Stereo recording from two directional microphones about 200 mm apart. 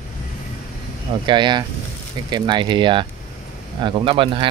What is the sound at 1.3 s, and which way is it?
Speech, 20° right (ahead or behind).